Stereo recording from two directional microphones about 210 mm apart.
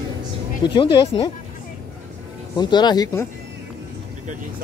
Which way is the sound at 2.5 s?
20° left (ahead or behind).